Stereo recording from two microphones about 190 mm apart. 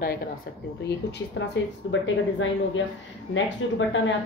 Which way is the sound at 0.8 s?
65° left (ahead or behind).